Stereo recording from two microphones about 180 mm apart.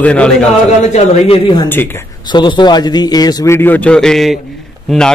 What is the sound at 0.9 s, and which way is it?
A man's voice, 35° left (ahead or behind).